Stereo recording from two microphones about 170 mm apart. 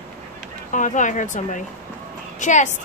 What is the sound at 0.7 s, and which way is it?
A woman's voice, 50° left (ahead or behind).